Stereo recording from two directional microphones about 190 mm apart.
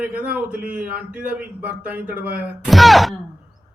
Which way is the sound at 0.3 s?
5° right (ahead or behind).